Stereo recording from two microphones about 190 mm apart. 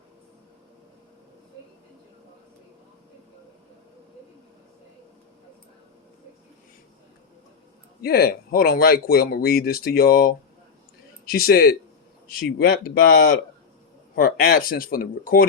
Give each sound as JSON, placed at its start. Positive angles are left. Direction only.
{"t": 8.0, "sound": "speech", "side_deg": 55}
{"t": 13.1, "sound": "speech", "side_deg": 65}
{"t": 14.2, "sound": "speech", "side_deg": 50}